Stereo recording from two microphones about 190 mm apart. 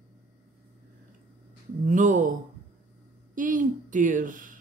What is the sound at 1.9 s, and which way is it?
Speech, 40° right (ahead or behind).